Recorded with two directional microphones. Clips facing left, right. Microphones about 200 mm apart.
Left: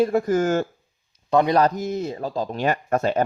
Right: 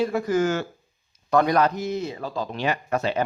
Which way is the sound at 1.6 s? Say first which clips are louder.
Left 2 dB; 45° left (ahead or behind).